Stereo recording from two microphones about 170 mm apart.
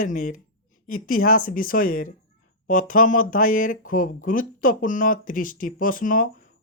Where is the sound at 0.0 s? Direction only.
50° left (ahead or behind).